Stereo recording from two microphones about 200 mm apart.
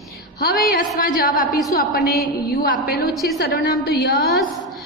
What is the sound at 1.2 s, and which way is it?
A woman's voice, 45° left (ahead or behind).